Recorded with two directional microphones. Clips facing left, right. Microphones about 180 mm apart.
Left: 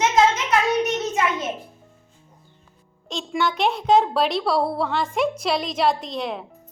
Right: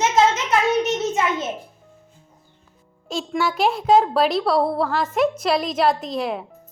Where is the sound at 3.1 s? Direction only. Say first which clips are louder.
Right 1 dB; 5° right (ahead or behind).